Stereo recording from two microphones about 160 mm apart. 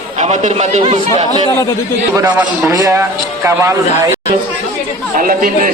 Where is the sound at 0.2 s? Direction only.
45° right (ahead or behind).